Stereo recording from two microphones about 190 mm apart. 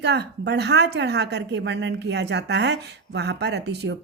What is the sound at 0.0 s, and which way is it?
Speech, 60° right (ahead or behind).